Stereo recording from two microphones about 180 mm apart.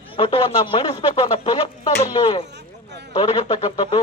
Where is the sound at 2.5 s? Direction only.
70° right (ahead or behind).